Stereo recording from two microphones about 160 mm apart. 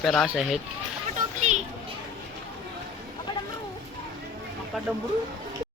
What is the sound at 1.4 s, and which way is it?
Children playing, 45° right (ahead or behind).